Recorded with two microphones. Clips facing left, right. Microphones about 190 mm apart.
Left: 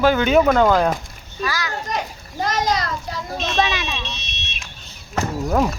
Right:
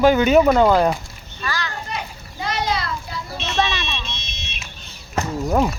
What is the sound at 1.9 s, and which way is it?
Children playing, 45° left (ahead or behind).